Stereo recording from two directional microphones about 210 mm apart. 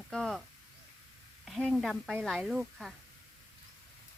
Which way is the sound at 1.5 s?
Centre (ahead or behind).